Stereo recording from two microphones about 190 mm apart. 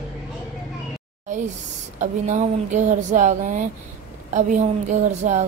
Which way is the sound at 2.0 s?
40° right (ahead or behind).